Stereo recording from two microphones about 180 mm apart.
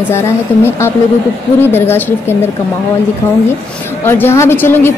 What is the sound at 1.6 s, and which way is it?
Speech, 10° left (ahead or behind).